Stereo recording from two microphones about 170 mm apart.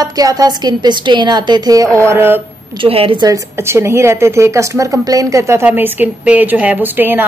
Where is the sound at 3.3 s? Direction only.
15° right (ahead or behind).